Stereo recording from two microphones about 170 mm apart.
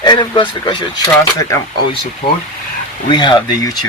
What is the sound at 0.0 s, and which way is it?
Speech, 25° left (ahead or behind).